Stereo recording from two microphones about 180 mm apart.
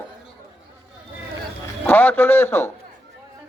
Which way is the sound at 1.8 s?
10° left (ahead or behind).